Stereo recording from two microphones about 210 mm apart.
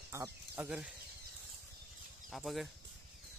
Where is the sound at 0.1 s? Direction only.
10° right (ahead or behind).